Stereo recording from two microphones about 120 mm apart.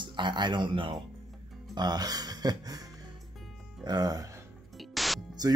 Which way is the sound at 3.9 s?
35° right (ahead or behind).